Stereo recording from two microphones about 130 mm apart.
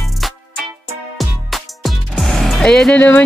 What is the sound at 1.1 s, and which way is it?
Speech, centre (ahead or behind).